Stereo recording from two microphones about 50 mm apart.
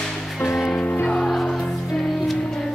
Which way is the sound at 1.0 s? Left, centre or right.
Centre.